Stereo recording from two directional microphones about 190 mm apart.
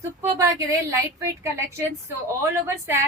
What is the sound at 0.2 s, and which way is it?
Speech, 15° right (ahead or behind).